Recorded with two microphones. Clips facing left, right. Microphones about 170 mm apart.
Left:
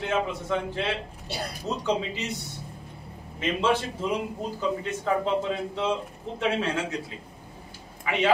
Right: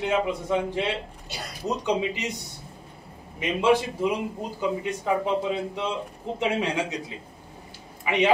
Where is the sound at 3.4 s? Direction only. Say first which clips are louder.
Right 3 dB; 10° right (ahead or behind).